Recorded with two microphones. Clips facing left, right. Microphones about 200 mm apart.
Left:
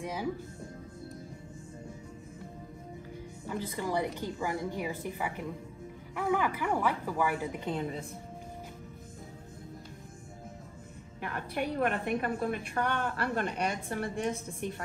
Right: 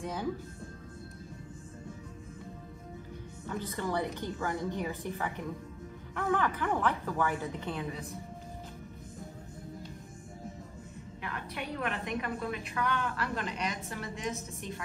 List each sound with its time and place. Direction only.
0.0 s a woman's voice: 10° left (ahead or behind)
3.4 s a woman's voice: 10° left (ahead or behind)
7.7 s a woman's voice: 30° left (ahead or behind)
11.1 s a woman's voice: 50° left (ahead or behind)